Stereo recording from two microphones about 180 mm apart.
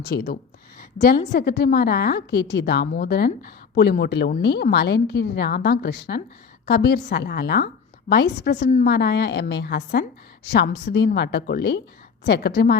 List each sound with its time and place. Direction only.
0.0 s a woman's voice: 65° left (ahead or behind)